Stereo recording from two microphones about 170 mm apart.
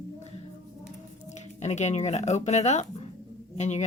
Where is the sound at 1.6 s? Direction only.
40° left (ahead or behind).